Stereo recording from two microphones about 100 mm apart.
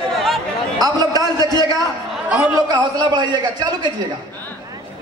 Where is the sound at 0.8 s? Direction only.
40° right (ahead or behind).